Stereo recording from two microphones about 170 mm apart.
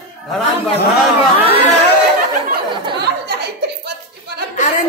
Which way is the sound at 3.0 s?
75° right (ahead or behind).